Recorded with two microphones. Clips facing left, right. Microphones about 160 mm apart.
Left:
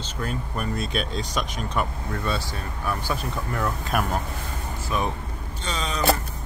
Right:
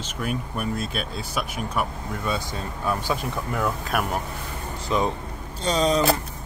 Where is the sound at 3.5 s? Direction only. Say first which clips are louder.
Even; 5° right (ahead or behind).